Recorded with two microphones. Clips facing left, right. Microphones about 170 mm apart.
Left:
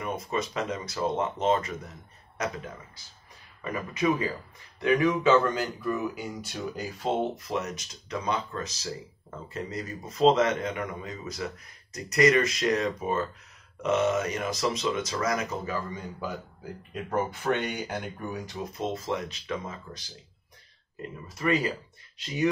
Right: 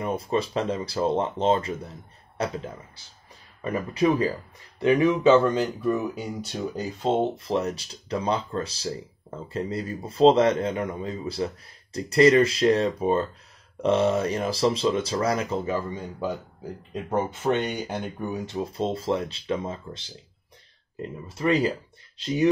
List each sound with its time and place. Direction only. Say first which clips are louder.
0.0 s speech: right 5 dB; 30° right (ahead or behind)
3.7 s speech: right 4 dB; 35° right (ahead or behind)
7.0 s speech: right 4 dB; 25° right (ahead or behind)
21.4 s speech: right 4 dB; 30° right (ahead or behind)